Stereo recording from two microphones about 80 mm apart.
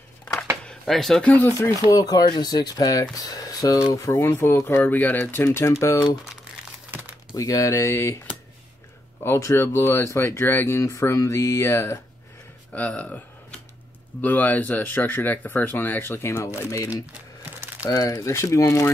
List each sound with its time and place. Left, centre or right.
0.2 s a sound: centre
0.7 s speech: centre
1.2 s speech: left
1.6 s speech: left
2.0 s speech: left
7.3 s speech: left
9.2 s speech: left
10.8 s speech: left
12.7 s speech: centre; by 16.9 s left
17.8 s speech: left